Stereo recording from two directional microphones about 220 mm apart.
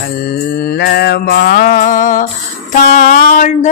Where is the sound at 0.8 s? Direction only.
45° left (ahead or behind).